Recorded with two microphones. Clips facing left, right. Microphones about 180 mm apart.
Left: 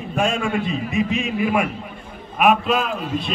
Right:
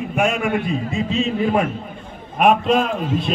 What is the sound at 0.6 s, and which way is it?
A man's voice, 20° left (ahead or behind).